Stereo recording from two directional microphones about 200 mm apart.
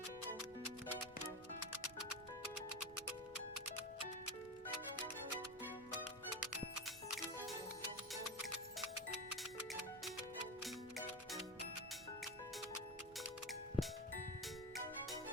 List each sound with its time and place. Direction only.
5.6 s music: 5° right (ahead or behind)
10.6 s music: centre (ahead or behind)
13.1 s music: centre (ahead or behind)